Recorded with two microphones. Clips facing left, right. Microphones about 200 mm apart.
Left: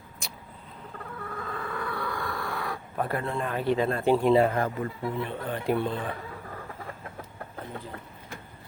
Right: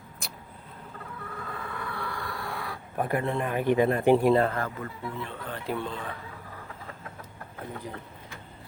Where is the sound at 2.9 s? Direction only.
15° right (ahead or behind).